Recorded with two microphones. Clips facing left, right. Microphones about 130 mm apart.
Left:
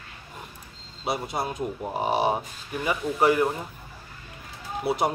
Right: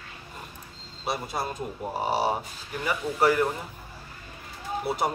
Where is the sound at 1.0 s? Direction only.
20° left (ahead or behind).